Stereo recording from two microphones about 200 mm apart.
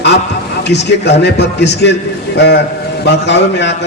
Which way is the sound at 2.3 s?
55° left (ahead or behind).